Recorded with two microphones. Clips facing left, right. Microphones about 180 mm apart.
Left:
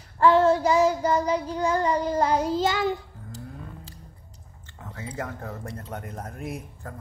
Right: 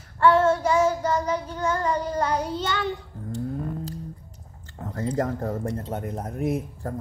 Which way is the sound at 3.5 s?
45° right (ahead or behind).